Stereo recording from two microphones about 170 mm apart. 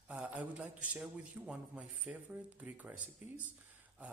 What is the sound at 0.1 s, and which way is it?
A man's voice, 5° right (ahead or behind).